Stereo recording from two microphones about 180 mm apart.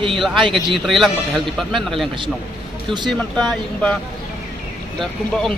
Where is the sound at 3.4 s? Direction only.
5° left (ahead or behind).